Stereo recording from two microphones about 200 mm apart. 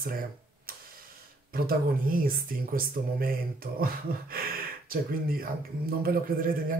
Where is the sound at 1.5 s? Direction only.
45° right (ahead or behind).